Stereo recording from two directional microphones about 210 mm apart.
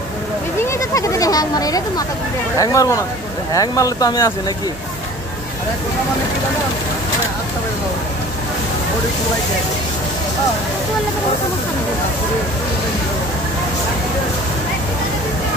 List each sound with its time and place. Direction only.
0.6 s speech: 15° left (ahead or behind)